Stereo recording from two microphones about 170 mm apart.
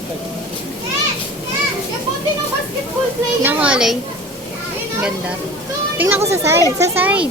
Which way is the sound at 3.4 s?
5° right (ahead or behind).